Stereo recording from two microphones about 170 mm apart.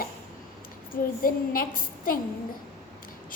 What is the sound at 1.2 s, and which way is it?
Speech, 60° left (ahead or behind).